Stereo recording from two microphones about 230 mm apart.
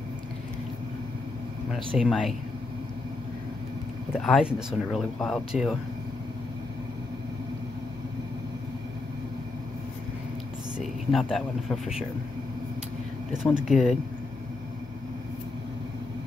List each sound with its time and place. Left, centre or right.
2.0 s speech: centre
4.1 s speech: centre
10.8 s speech: centre
13.3 s speech: centre